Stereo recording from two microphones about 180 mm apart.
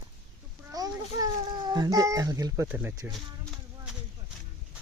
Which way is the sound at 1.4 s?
25° right (ahead or behind).